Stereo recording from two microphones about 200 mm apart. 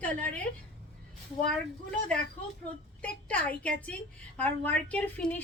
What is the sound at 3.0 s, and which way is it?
Speech, 5° left (ahead or behind).